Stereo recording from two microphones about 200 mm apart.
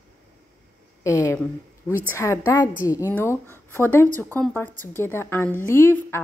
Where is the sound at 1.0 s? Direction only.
15° left (ahead or behind).